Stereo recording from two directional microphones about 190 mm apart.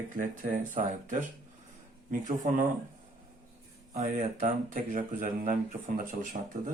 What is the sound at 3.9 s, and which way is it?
Speech, 45° right (ahead or behind).